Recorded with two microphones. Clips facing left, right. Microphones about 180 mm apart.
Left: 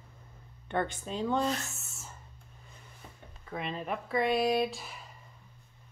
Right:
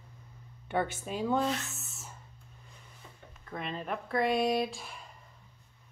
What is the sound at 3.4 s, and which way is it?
Speech, centre (ahead or behind).